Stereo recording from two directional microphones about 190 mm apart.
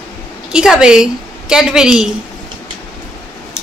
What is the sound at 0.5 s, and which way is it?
A woman's voice, 5° right (ahead or behind).